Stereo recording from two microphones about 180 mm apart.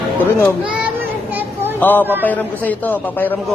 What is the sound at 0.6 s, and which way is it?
Speech, 5° right (ahead or behind).